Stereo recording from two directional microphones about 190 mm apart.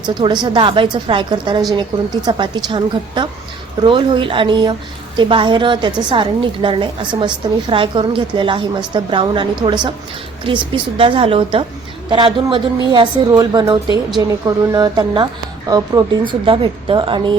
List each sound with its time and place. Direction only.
0.1 s a woman's voice: 25° right (ahead or behind)